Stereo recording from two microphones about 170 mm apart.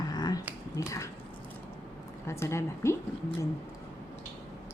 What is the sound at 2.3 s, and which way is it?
Speech, 15° left (ahead or behind).